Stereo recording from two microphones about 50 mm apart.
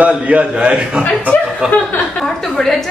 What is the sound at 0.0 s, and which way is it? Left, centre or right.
A man's voice, right.